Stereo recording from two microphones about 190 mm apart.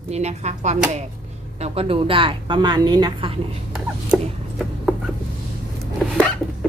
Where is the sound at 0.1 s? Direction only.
35° right (ahead or behind).